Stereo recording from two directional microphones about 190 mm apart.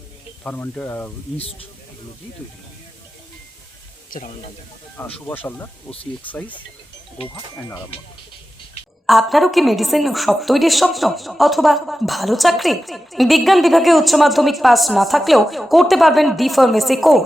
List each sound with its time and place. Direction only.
0.4 s speech: 10° left (ahead or behind)
1.4 s speech: 30° left (ahead or behind)
4.1 s speech: 45° left (ahead or behind)
5.2 s speech: 10° left (ahead or behind)
7.3 s speech: 20° left (ahead or behind)
9.0 s a woman's voice: centre (ahead or behind)